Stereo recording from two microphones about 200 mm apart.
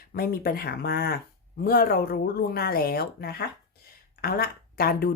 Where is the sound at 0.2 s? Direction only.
50° left (ahead or behind).